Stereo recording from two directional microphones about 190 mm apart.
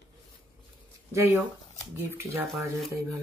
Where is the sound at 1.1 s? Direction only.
15° right (ahead or behind).